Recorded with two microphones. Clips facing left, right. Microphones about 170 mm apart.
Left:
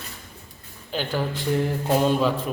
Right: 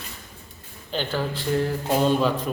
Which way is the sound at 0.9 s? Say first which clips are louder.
Even; 10° left (ahead or behind).